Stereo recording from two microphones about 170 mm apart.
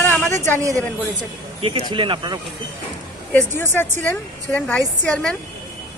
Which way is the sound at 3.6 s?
15° left (ahead or behind).